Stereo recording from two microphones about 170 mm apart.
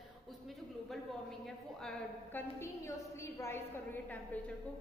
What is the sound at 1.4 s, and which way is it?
A woman's voice, 5° left (ahead or behind).